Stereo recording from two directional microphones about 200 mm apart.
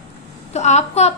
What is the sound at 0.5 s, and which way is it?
Speech, 35° left (ahead or behind).